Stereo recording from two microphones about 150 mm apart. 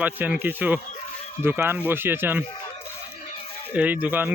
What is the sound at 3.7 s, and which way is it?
Speech, 10° right (ahead or behind).